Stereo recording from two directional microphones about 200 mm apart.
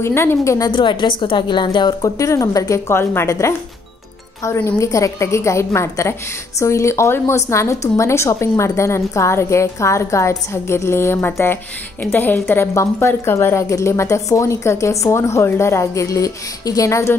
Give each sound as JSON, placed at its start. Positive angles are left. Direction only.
{"t": 0.0, "sound": "a woman's voice", "side_deg": 10}